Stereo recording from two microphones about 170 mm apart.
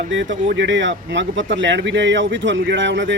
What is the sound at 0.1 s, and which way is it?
Speech, 90° right.